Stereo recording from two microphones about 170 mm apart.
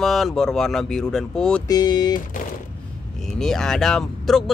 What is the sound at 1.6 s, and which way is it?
Speech, 25° left (ahead or behind).